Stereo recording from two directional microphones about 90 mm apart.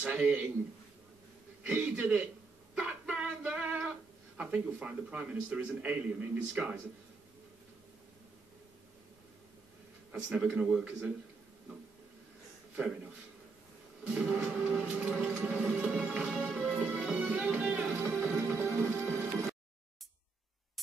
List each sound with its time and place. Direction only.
0.0 s a man's voice: 10° right (ahead or behind)
1.7 s a man's voice: 15° right (ahead or behind)
2.7 s a sound: 15° right (ahead or behind)
3.2 s female singing: 15° right (ahead or behind)
4.4 s a man's voice: 15° right (ahead or behind)
10.1 s a man's voice: 10° right (ahead or behind)
12.7 s a man's voice: 15° right (ahead or behind)
14.1 s a man's voice: 10° right (ahead or behind)
18.1 s music: 10° right (ahead or behind)